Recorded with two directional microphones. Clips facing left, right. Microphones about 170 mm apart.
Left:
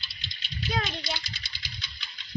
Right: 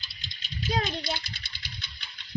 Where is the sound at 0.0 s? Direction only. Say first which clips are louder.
Left 1 dB; 45° right (ahead or behind).